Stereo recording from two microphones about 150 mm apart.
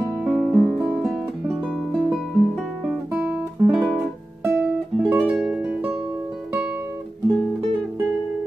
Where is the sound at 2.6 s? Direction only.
10° right (ahead or behind).